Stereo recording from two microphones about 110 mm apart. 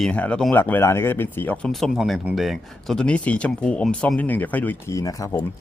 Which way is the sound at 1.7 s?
Centre (ahead or behind).